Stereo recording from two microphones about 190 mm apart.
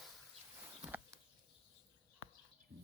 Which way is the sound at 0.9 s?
10° right (ahead or behind).